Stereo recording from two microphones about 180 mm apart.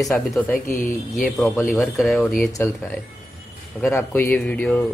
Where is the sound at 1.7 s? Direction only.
Centre (ahead or behind).